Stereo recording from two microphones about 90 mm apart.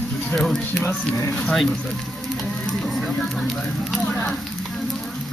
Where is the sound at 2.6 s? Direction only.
5° left (ahead or behind).